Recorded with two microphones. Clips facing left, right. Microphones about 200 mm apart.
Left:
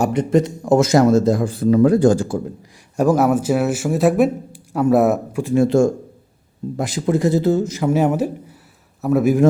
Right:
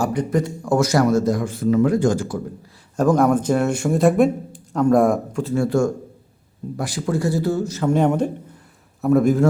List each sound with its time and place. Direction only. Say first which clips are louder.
0.0 s speech: left 4 dB; 25° left (ahead or behind)
2.9 s a man's voice: left 1 dB; 10° left (ahead or behind)